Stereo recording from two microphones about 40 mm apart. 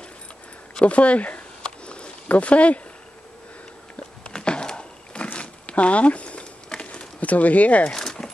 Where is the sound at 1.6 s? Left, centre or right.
Left.